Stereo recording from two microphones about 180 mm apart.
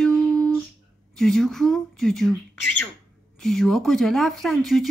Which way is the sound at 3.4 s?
Centre (ahead or behind).